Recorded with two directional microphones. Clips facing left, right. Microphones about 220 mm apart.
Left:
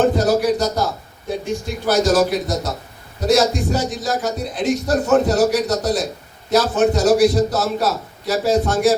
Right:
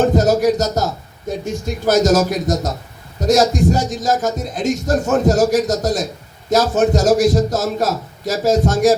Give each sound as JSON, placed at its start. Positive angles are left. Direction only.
{"t": 0.0, "sound": "a man's voice", "side_deg": -45}